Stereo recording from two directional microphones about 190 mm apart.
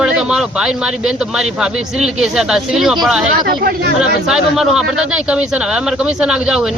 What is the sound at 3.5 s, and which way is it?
Speech, 55° right (ahead or behind).